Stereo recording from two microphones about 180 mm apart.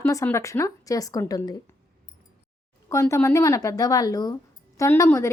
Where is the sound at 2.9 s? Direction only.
15° left (ahead or behind).